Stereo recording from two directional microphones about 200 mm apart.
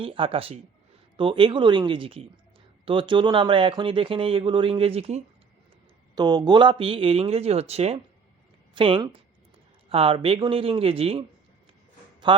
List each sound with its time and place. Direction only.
0.0 s speech: 25° right (ahead or behind)
6.1 s speech: 20° right (ahead or behind)